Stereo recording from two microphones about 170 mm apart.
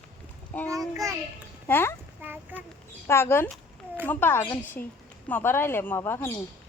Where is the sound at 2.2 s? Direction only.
10° right (ahead or behind).